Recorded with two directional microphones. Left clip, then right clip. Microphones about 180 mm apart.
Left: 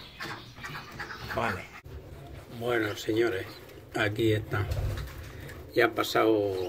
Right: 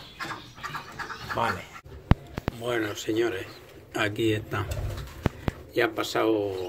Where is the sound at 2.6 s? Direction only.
15° right (ahead or behind).